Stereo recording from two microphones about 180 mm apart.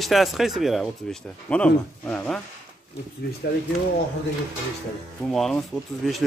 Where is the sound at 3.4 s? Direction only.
60° left (ahead or behind).